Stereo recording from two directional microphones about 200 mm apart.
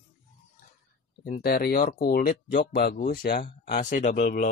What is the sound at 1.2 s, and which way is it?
Speech, 45° left (ahead or behind).